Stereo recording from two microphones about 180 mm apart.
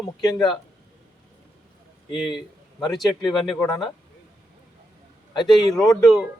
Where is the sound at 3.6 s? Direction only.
25° left (ahead or behind).